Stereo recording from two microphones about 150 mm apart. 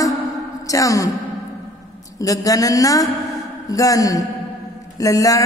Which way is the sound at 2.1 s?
20° left (ahead or behind).